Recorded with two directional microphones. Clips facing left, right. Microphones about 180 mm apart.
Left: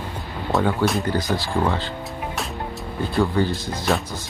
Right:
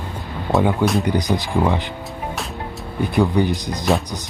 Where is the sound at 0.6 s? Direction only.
15° right (ahead or behind).